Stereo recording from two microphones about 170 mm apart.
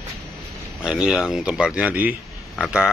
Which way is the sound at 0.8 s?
5° right (ahead or behind).